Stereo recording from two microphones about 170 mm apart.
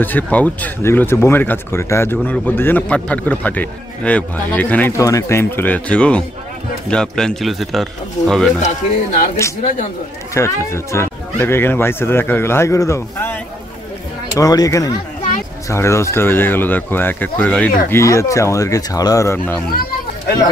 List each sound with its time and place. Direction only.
0.0 s a man's voice: 10° left (ahead or behind)
8.6 s speech: 50° left (ahead or behind)
10.3 s speech: 15° left (ahead or behind)